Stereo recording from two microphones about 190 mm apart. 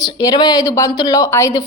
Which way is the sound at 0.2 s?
20° left (ahead or behind).